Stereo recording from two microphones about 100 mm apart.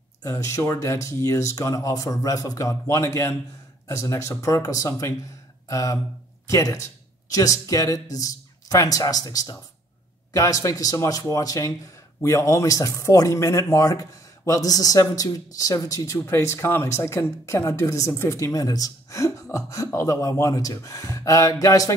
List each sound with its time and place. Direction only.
0.2 s speech: 35° left (ahead or behind)